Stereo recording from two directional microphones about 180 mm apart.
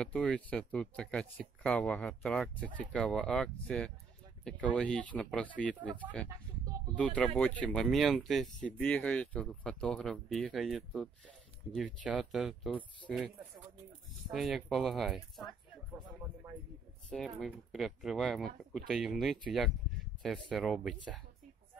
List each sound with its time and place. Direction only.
0.0 s speech: 5° left (ahead or behind)
7.0 s speech: 5° left (ahead or behind)
14.3 s speech: centre (ahead or behind)
17.1 s speech: centre (ahead or behind)